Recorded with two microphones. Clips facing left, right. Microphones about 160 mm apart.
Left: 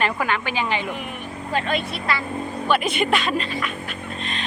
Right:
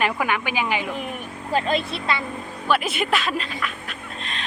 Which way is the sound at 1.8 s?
25° right (ahead or behind).